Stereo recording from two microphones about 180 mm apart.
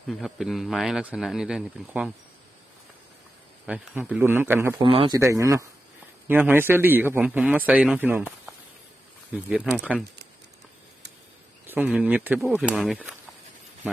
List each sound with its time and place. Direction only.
0.1 s speech: centre (ahead or behind)
3.7 s a man's voice: 5° right (ahead or behind)
4.8 s a man's voice: 30° right (ahead or behind); by 10.0 s 5° right (ahead or behind)
11.7 s a man's voice: 10° right (ahead or behind)